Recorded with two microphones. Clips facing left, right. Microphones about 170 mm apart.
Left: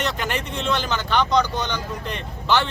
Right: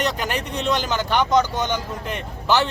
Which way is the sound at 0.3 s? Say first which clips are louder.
Right 1 dB; 40° right (ahead or behind).